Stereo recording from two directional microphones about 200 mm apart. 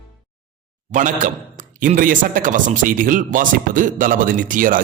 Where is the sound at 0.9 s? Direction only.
40° right (ahead or behind).